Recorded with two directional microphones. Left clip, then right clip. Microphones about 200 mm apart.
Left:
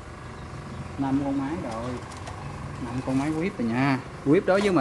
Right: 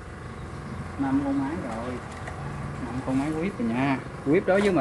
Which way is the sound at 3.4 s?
35° left (ahead or behind).